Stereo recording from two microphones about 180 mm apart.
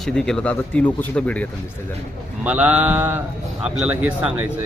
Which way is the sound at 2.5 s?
10° right (ahead or behind).